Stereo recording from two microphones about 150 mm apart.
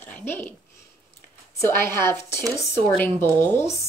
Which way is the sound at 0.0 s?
15° left (ahead or behind).